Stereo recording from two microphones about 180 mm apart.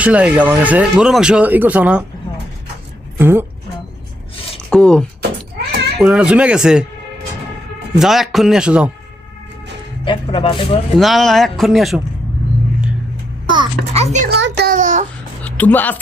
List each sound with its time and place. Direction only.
0.0 s speech: 5° right (ahead or behind)
3.2 s speech: 10° right (ahead or behind)
4.7 s speech: 5° left (ahead or behind)
7.9 s speech: centre (ahead or behind)
10.0 s speech: 30° left (ahead or behind)
10.9 s speech: centre (ahead or behind)
13.5 s a child's voice: 25° right (ahead or behind)
14.0 s speech: 40° right (ahead or behind)
14.3 s a child's voice: 70° right (ahead or behind)
14.7 s a sound: 45° right (ahead or behind)
15.4 s speech: 10° left (ahead or behind)